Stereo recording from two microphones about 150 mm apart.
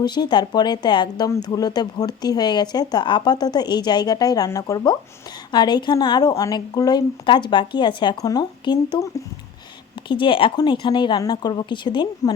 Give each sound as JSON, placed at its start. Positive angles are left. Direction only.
{"t": 0.0, "sound": "speech", "side_deg": 30}
{"t": 10.1, "sound": "a woman's voice", "side_deg": 35}